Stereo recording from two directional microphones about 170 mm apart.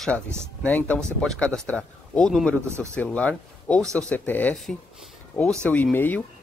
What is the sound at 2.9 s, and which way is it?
A man's voice, 10° left (ahead or behind).